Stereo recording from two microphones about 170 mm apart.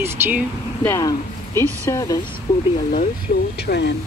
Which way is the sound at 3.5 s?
80° left.